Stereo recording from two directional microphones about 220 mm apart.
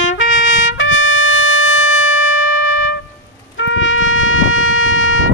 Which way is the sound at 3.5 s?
60° left (ahead or behind).